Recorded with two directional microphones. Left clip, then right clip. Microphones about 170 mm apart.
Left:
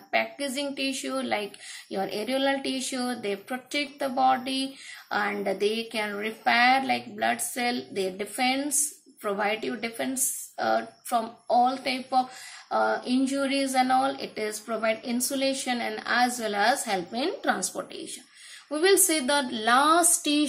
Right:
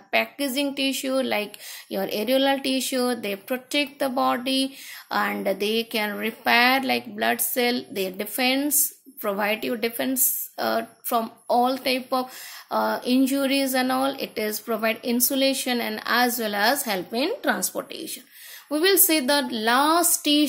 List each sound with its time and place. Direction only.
0.1 s a woman's voice: 40° right (ahead or behind)